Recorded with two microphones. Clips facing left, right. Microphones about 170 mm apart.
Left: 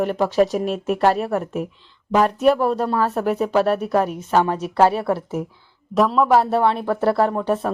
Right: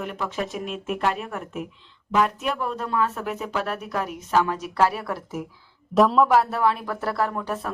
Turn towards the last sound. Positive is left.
turn(degrees=30)  # may be behind; listen again after turning